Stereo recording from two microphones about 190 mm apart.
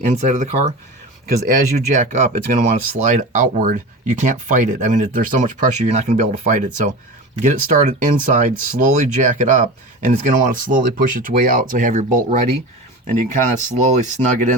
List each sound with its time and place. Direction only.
0.0 s speech: 40° right (ahead or behind)